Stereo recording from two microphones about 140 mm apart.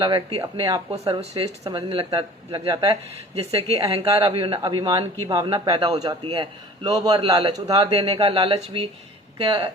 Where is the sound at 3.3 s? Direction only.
45° right (ahead or behind).